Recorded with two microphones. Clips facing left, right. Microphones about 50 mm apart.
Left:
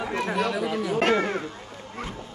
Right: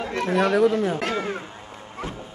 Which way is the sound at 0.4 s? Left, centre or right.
Right.